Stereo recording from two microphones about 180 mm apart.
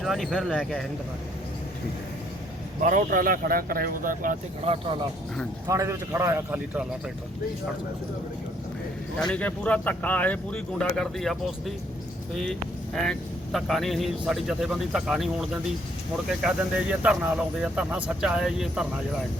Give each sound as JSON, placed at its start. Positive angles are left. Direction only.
{"t": 0.0, "sound": "speech", "side_deg": 0}
{"t": 2.8, "sound": "a man's voice", "side_deg": -45}
{"t": 4.6, "sound": "speech", "side_deg": -30}
{"t": 5.6, "sound": "a man's voice", "side_deg": -15}
{"t": 9.1, "sound": "speech", "side_deg": 5}